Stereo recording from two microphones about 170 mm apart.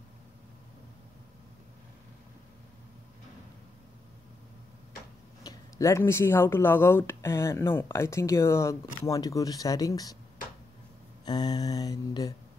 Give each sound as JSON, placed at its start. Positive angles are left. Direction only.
{"t": 5.4, "sound": "speech", "side_deg": 20}
{"t": 11.2, "sound": "mantra", "side_deg": 25}